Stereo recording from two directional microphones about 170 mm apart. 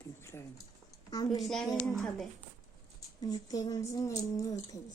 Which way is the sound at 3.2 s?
20° left (ahead or behind).